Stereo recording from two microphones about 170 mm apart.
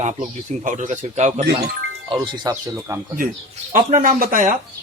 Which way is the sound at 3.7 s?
50° right (ahead or behind).